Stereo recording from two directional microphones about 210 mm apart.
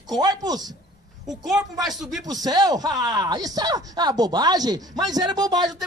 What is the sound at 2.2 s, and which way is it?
Speech, 20° right (ahead or behind).